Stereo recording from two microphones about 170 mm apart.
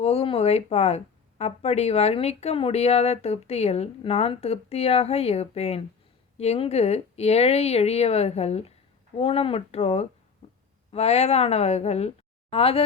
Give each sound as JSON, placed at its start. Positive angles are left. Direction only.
{"t": 0.0, "sound": "a woman's voice", "side_deg": 35}